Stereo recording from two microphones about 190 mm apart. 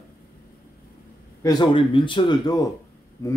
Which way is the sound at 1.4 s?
20° left (ahead or behind).